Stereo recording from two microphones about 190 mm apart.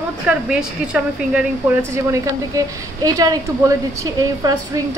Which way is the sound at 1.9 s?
15° right (ahead or behind).